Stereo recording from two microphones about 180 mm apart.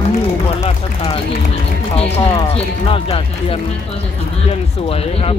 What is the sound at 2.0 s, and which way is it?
Speech, 35° left (ahead or behind).